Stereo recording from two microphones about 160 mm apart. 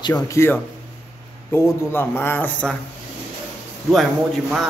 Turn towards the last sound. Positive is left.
turn(degrees=0)  # may be behind; listen again after turning